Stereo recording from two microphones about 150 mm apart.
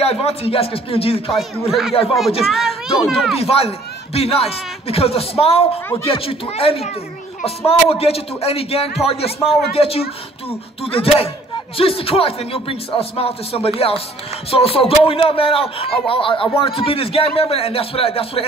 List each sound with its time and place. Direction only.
0.0 s a man's voice: 40° left (ahead or behind)
1.7 s a child's voice: centre (ahead or behind)
3.3 s a man's voice: 40° left (ahead or behind)